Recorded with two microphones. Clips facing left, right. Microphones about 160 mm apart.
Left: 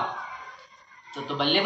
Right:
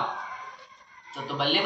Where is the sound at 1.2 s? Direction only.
5° right (ahead or behind).